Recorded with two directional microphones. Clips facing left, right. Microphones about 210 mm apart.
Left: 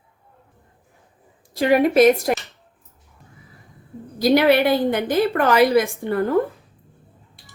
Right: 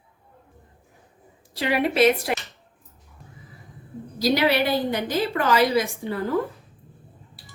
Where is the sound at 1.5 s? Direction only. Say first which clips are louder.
Left 6 dB; 45° left (ahead or behind).